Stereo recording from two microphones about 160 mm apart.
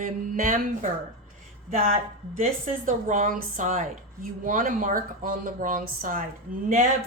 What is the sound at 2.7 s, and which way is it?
A woman's voice, 55° right (ahead or behind).